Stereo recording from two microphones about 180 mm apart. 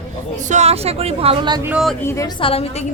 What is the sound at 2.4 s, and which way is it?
Speech, 30° left (ahead or behind).